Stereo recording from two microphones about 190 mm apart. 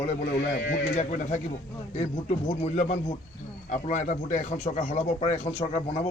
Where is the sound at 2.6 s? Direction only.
35° left (ahead or behind).